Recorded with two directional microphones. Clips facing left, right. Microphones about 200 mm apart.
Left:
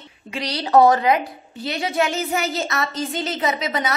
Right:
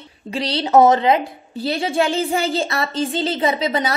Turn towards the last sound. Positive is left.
turn(degrees=-30)  # may be behind; listen again after turning